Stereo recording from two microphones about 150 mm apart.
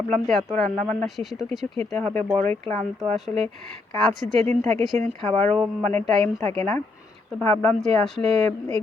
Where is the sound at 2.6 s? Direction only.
45° right (ahead or behind).